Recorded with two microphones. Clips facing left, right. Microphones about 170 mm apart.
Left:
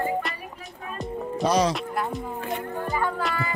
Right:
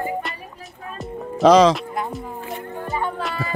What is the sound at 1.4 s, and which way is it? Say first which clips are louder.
Speech: right 10 dB; 90° right.